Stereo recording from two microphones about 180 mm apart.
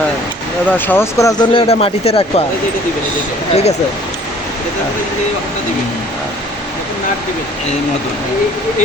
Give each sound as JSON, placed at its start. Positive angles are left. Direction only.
{"t": 0.9, "sound": "speech", "side_deg": 15}
{"t": 3.5, "sound": "speech", "side_deg": 35}